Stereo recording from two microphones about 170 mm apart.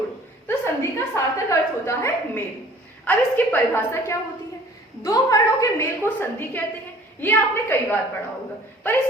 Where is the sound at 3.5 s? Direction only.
15° left (ahead or behind).